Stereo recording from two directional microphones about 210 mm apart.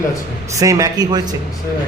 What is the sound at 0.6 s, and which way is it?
Speech, 15° right (ahead or behind).